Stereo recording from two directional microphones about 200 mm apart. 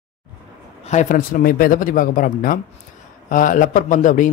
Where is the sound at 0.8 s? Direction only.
40° left (ahead or behind).